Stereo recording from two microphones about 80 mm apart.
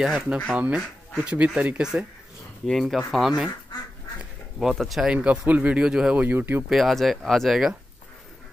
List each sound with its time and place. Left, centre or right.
0.0 s speech: centre
2.6 s speech: centre
4.6 s speech: centre
5.1 s speech: centre
6.1 s speech: right
6.7 s speech: centre